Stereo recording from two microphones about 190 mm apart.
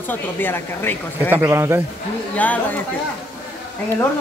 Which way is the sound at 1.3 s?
10° right (ahead or behind).